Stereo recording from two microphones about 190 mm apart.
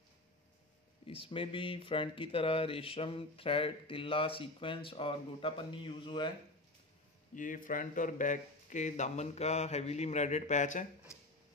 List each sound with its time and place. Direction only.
1.0 s speech: 30° left (ahead or behind)
7.3 s speech: 45° left (ahead or behind)